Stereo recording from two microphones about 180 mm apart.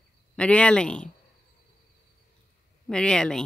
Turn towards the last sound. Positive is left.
turn(degrees=5)  # may be behind; listen again after turning